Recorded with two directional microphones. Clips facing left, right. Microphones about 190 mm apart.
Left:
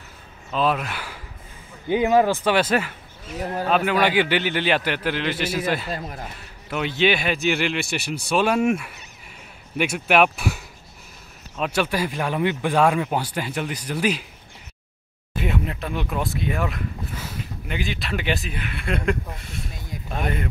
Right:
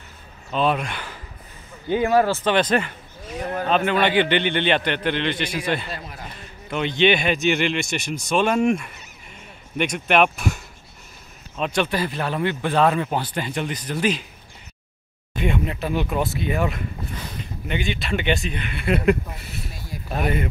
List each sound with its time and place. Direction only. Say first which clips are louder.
0.5 s speech: right 1 dB; centre (ahead or behind)
5.9 s speech: left 4 dB; 40° left (ahead or behind)
6.7 s speech: right 2 dB; 5° left (ahead or behind)
15.3 s speech: right 2 dB; centre (ahead or behind)